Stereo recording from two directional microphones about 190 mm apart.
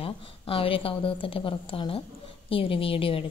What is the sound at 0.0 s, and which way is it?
A woman's voice, 30° left (ahead or behind).